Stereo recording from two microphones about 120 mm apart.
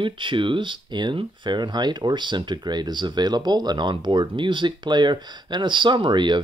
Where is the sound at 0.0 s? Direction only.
45° right (ahead or behind).